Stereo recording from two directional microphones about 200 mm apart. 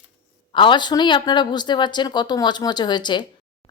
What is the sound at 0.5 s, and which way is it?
A woman's voice, 25° left (ahead or behind).